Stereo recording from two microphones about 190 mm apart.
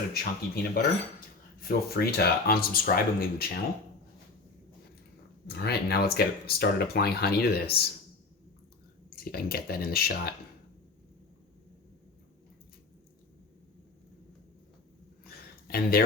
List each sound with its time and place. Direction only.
0.1 s speech: 50° left (ahead or behind)
5.5 s speech: 55° left (ahead or behind)
9.2 s speech: 55° left (ahead or behind)
15.2 s a sound: 55° left (ahead or behind)